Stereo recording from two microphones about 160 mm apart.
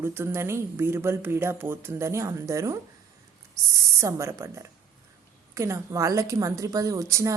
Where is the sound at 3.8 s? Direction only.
20° right (ahead or behind).